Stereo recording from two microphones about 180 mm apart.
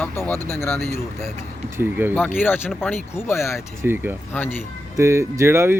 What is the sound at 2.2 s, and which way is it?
Speech, 10° left (ahead or behind).